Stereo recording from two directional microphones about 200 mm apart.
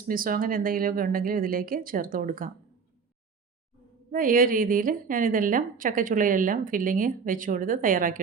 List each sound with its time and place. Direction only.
0.1 s a woman's voice: 45° right (ahead or behind)
4.1 s a woman's voice: 45° right (ahead or behind)